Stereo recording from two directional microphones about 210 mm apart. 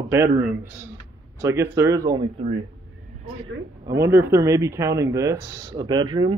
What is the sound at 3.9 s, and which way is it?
Speech, 15° right (ahead or behind).